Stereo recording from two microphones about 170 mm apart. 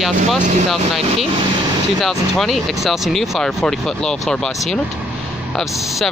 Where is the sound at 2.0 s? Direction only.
Centre (ahead or behind).